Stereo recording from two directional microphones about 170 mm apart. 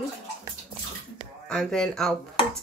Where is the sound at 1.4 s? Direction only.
5° left (ahead or behind).